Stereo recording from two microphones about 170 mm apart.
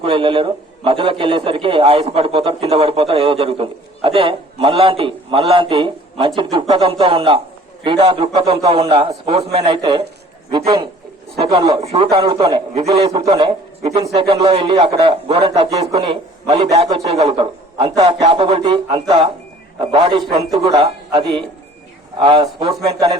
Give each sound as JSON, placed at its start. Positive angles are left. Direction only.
{"t": 0.0, "sound": "a man's voice", "side_deg": -30}